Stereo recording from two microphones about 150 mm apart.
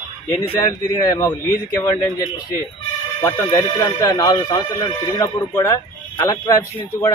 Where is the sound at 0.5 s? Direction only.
25° left (ahead or behind).